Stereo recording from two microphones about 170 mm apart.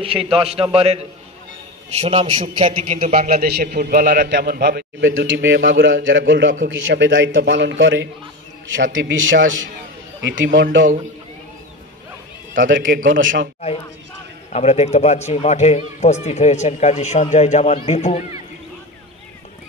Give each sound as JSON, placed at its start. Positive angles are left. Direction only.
{"t": 0.2, "sound": "a man's voice", "side_deg": 0}
{"t": 0.7, "sound": "a man's voice", "side_deg": -35}
{"t": 3.2, "sound": "a man's voice", "side_deg": -60}
{"t": 4.3, "sound": "a man's voice", "side_deg": -65}
{"t": 12.5, "sound": "a man's voice", "side_deg": -90}
{"t": 13.6, "sound": "speech", "side_deg": 35}